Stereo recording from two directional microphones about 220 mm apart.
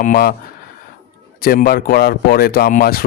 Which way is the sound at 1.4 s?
40° left (ahead or behind).